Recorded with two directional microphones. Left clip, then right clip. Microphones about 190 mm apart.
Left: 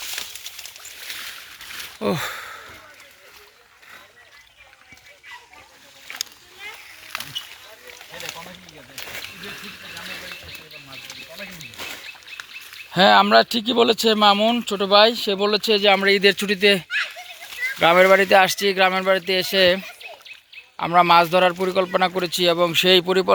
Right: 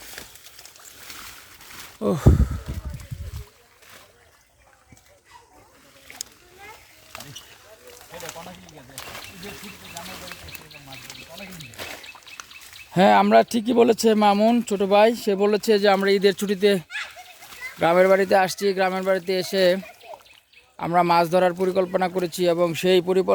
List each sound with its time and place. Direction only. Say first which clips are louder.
0.0 s boat: left 10 dB; 55° right (ahead or behind)
2.0 s a man's voice: right 1 dB; 15° right (ahead or behind)
8.1 s a sound: left 2 dB; 30° left (ahead or behind)
12.9 s speech: left 2 dB; 25° right (ahead or behind)
16.0 s a man's voice: left 3 dB; 15° right (ahead or behind)